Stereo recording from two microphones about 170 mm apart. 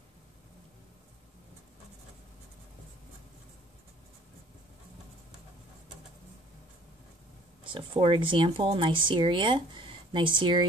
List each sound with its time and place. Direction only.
7.6 s speech: 30° right (ahead or behind)